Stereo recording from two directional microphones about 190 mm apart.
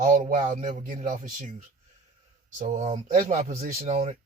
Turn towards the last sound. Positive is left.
turn(degrees=-35)  # may be behind; listen again after turning